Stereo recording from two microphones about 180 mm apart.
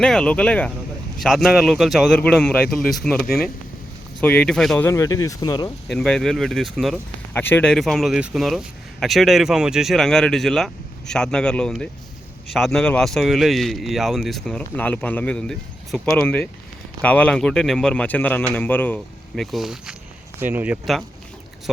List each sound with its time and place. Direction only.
0.0 s speech: 5° left (ahead or behind)
3.2 s speech: 60° left (ahead or behind)
4.2 s speech: 10° left (ahead or behind)
4.9 s speech: 20° left (ahead or behind)
5.9 s speech: centre (ahead or behind)
7.3 s speech: 10° left (ahead or behind); by 20.7 s 10° right (ahead or behind)